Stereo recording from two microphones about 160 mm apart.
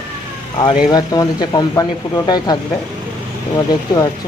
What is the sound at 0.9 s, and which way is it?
Speech, 25° left (ahead or behind).